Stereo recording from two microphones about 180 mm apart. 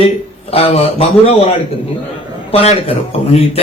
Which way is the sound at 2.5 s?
35° left (ahead or behind).